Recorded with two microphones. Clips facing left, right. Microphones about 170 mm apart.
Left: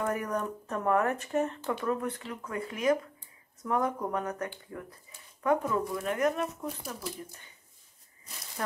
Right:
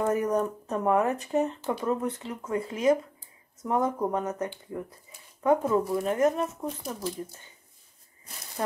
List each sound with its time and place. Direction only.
0.0 s speech: 20° right (ahead or behind)
8.6 s speech: 25° right (ahead or behind)